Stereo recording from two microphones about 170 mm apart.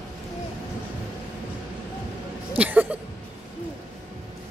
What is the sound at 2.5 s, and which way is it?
Speech, 10° right (ahead or behind).